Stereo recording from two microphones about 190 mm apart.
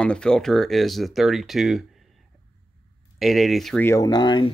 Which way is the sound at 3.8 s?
20° left (ahead or behind).